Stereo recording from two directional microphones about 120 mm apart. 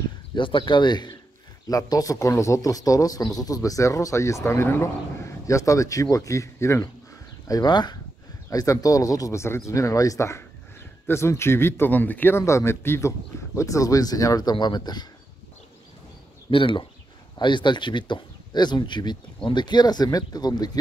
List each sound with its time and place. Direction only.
0.3 s speech: 45° left (ahead or behind)
16.4 s speech: 45° left (ahead or behind)